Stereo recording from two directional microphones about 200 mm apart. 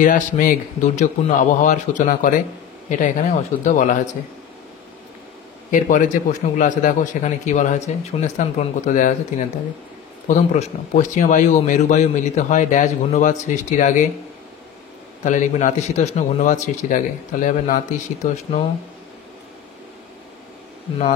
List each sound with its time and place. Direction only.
0.0 s speech: 40° left (ahead or behind)
5.7 s speech: 40° left (ahead or behind)
15.2 s speech: 40° left (ahead or behind)